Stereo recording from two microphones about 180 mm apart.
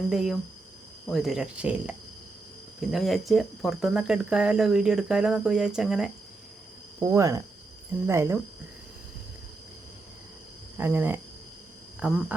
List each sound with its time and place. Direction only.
0.1 s speech: 5° right (ahead or behind)
7.0 s speech: 15° right (ahead or behind)
10.8 s speech: 10° right (ahead or behind)